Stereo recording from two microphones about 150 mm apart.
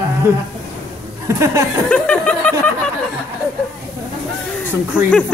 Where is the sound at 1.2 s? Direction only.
20° right (ahead or behind).